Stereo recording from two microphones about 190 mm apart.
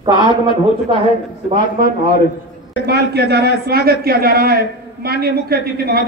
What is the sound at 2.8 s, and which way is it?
A man's voice, 60° right (ahead or behind).